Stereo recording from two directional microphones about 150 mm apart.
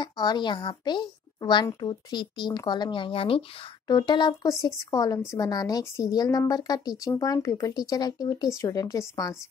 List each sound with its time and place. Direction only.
0.0 s a woman's voice: 30° left (ahead or behind)